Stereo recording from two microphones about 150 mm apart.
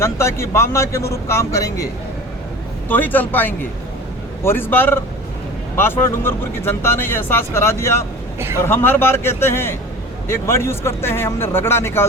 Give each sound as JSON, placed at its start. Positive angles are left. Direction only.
{"t": 0.0, "sound": "speech", "side_deg": 20}
{"t": 2.9, "sound": "speech", "side_deg": 10}